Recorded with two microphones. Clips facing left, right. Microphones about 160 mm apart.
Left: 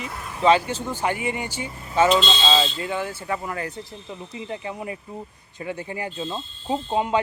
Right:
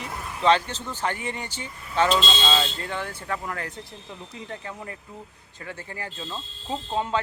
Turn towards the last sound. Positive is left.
turn(degrees=15)  # may be behind; listen again after turning